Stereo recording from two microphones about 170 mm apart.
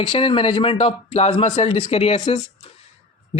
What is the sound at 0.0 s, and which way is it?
A man's voice, 30° left (ahead or behind).